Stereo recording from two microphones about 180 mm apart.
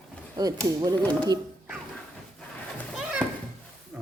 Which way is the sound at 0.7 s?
20° right (ahead or behind).